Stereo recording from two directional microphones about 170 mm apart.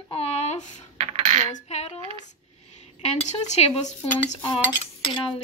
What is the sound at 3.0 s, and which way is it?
A woman's voice, 40° left (ahead or behind).